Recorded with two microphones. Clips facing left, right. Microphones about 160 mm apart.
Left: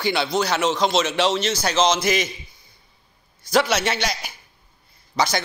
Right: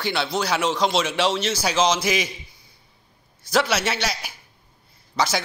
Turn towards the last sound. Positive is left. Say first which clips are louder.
# left 1 dB
turn(degrees=-5)  # may be behind; listen again after turning